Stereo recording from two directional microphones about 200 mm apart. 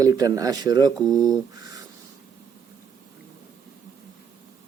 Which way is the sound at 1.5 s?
20° right (ahead or behind).